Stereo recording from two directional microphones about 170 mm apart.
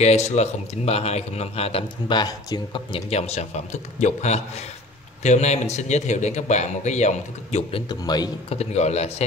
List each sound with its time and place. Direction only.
0.0 s speech: 40° left (ahead or behind)
7.9 s a man's voice: 25° left (ahead or behind)
8.5 s speech: 40° left (ahead or behind)